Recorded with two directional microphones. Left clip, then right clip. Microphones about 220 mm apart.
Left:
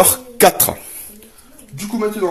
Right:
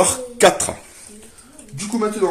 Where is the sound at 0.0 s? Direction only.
50° left (ahead or behind).